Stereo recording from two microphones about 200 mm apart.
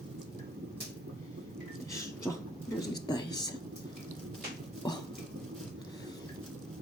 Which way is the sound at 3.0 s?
20° left (ahead or behind).